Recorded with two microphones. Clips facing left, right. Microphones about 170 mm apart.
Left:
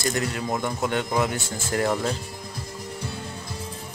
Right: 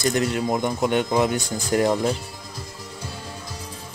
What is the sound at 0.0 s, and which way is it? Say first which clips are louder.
Speech: right 5 dB; 20° right (ahead or behind).